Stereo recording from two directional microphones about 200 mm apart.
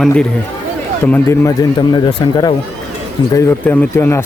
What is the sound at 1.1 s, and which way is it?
Speech, 15° left (ahead or behind).